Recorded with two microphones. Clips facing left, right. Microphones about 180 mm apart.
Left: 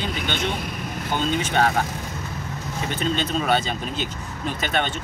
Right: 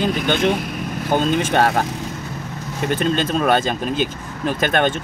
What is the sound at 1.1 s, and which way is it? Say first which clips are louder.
Speech: right 5 dB; 55° right (ahead or behind).